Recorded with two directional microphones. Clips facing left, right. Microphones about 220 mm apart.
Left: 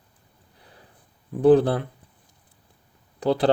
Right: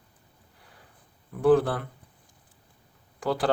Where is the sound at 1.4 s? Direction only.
25° left (ahead or behind).